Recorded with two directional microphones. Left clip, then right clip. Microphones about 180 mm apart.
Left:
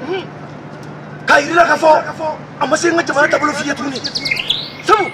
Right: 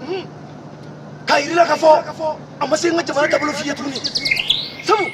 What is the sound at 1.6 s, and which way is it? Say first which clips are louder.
A man's voice: right 1 dB; 10° right (ahead or behind).